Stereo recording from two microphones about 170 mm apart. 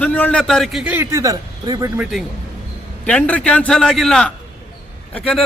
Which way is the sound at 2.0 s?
Centre (ahead or behind).